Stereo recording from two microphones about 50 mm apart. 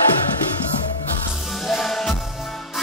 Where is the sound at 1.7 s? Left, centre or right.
Centre.